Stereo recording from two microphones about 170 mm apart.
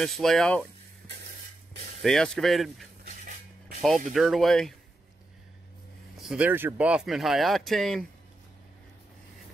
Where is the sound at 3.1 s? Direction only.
50° right (ahead or behind).